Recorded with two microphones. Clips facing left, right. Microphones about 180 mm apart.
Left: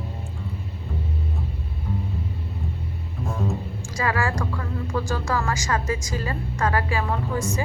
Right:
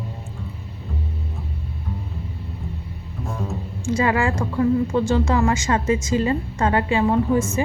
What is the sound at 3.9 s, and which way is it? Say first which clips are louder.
Speech: right 5 dB; 25° right (ahead or behind).